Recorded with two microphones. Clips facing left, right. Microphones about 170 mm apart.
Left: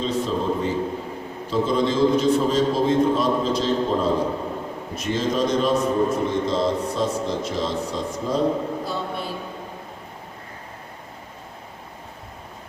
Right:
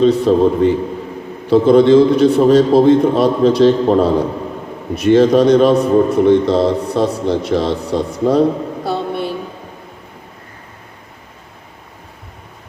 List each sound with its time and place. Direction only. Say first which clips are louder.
0.0 s a man's voice: right 12 dB; 65° right (ahead or behind)